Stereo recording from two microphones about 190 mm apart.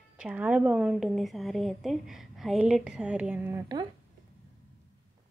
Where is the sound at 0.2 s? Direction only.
5° right (ahead or behind).